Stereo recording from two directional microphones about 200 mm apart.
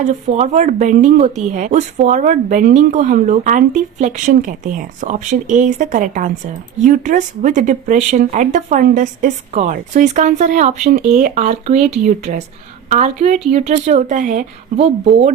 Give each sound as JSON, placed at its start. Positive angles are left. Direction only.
{"t": 0.0, "sound": "speech", "side_deg": -35}